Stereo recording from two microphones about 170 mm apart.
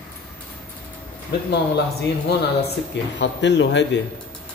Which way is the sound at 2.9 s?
90° left.